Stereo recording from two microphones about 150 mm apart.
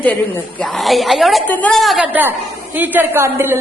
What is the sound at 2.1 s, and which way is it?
A woman's voice, 10° right (ahead or behind).